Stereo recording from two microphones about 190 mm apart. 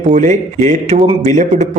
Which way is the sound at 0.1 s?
40° right (ahead or behind).